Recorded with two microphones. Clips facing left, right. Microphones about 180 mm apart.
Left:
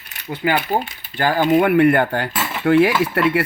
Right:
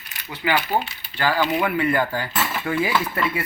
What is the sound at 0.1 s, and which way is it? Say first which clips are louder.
Speech: left 3 dB; 50° left (ahead or behind).